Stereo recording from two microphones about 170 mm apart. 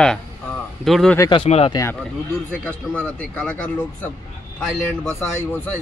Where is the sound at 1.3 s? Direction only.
35° left (ahead or behind).